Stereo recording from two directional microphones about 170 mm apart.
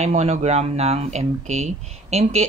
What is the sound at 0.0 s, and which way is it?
Speech, 40° right (ahead or behind).